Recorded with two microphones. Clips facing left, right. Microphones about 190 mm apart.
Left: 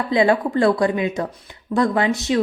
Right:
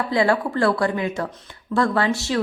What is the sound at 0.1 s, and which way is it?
A woman's voice, 20° left (ahead or behind).